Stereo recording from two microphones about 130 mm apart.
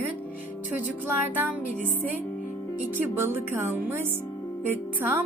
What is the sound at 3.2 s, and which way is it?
Speech, 15° right (ahead or behind).